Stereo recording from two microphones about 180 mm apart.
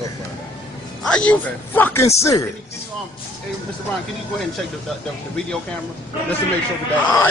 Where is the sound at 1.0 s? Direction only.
5° left (ahead or behind).